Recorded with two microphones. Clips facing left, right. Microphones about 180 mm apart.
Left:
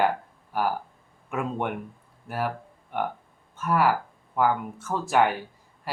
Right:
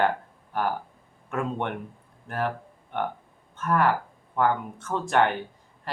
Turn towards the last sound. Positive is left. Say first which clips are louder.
# even
turn(degrees=5)  # may be behind; listen again after turning